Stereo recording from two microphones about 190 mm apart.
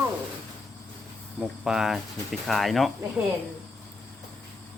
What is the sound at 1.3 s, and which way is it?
Speech, 5° right (ahead or behind).